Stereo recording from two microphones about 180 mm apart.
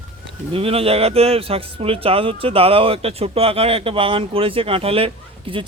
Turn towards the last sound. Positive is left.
turn(degrees=-30)  # may be behind; listen again after turning